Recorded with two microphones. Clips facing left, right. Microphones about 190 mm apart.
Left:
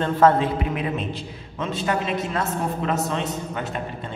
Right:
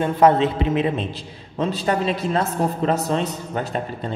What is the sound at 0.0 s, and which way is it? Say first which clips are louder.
A man's voice: right 2 dB; 15° right (ahead or behind).